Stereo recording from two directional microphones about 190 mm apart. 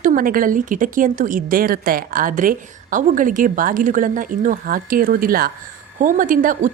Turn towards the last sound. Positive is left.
turn(degrees=-45)  # may be behind; listen again after turning